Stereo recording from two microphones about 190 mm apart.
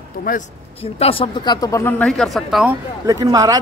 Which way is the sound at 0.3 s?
45° left (ahead or behind).